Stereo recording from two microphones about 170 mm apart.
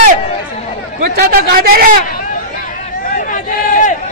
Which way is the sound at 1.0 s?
60° right (ahead or behind).